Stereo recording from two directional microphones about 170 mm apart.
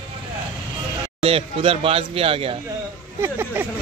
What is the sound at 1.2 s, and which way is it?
Speech, 35° right (ahead or behind).